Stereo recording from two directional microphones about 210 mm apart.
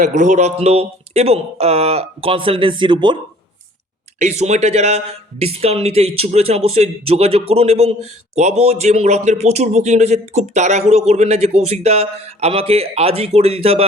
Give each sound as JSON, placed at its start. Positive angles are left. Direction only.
{"t": 0.0, "sound": "speech", "side_deg": -35}
{"t": 4.2, "sound": "a man's voice", "side_deg": -30}